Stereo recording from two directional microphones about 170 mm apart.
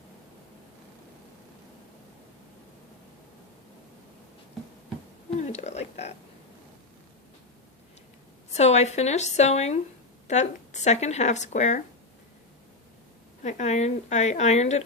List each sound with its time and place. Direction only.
5.4 s a sound: 40° left (ahead or behind)
8.5 s a woman's voice: 40° left (ahead or behind)
13.4 s a woman's voice: 45° left (ahead or behind)